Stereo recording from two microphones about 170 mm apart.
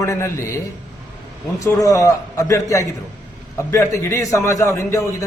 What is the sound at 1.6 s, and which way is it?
A man's voice, 20° left (ahead or behind).